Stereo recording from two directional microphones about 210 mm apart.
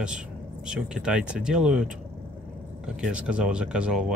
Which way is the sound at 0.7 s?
5° right (ahead or behind).